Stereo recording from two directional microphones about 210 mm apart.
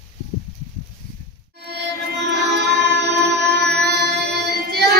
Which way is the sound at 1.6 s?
50° right (ahead or behind).